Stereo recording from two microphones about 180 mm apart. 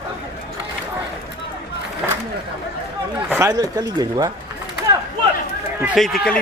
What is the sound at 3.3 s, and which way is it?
Speech, 15° right (ahead or behind).